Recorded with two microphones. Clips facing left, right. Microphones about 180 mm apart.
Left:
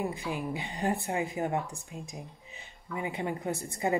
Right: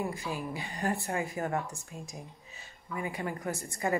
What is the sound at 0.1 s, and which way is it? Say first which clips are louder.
Speech: left 2 dB; 20° left (ahead or behind).